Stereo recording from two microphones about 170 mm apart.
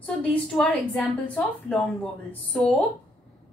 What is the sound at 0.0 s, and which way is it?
A woman's voice, 5° left (ahead or behind).